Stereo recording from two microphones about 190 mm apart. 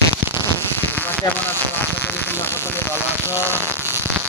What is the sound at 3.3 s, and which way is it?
Speech, 10° right (ahead or behind).